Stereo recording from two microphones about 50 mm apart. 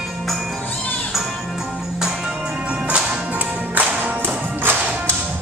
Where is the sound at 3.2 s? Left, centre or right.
Right.